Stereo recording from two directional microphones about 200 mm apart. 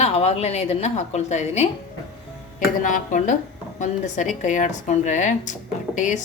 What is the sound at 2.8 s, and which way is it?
A woman's voice, 40° left (ahead or behind).